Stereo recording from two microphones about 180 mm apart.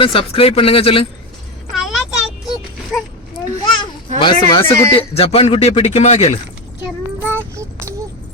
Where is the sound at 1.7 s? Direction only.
Centre (ahead or behind).